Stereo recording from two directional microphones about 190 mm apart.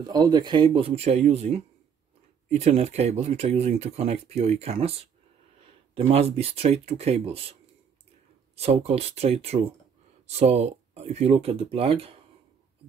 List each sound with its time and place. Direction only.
0.0 s speech: 20° right (ahead or behind)
8.5 s speech: 35° right (ahead or behind)